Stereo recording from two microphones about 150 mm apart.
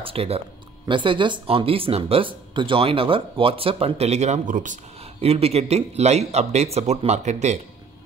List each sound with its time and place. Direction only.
0.0 s speech: 40° right (ahead or behind); by 4.7 s 60° right (ahead or behind)
5.2 s speech: 45° right (ahead or behind)